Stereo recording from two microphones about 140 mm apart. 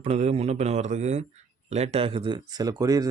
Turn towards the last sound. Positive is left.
turn(degrees=-25)  # may be behind; listen again after turning